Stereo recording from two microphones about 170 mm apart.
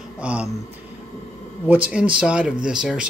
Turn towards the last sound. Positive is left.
turn(degrees=-5)  # may be behind; listen again after turning